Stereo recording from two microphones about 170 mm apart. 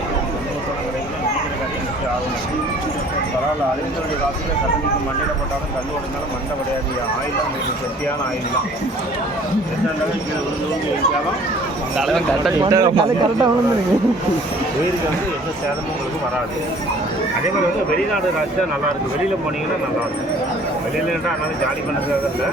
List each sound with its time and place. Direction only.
11.9 s speech: centre (ahead or behind)
12.6 s a man's voice: 25° right (ahead or behind)